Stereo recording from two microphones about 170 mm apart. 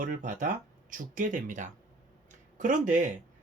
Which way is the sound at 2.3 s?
50° right (ahead or behind).